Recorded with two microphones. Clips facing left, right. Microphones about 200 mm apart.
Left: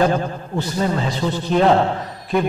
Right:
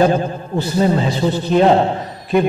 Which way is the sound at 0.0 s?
25° right (ahead or behind).